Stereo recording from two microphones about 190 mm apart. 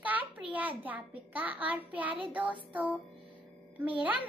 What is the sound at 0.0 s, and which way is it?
A child's voice, 10° right (ahead or behind).